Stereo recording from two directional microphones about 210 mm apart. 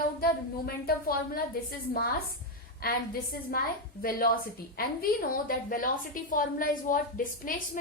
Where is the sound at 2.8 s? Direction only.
45° left (ahead or behind).